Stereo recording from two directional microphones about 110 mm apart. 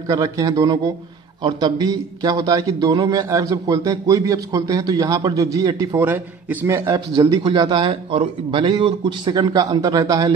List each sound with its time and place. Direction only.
0.1 s a man's voice: 30° right (ahead or behind)
5.9 s a man's voice: 20° right (ahead or behind)
7.2 s a man's voice: 45° right (ahead or behind)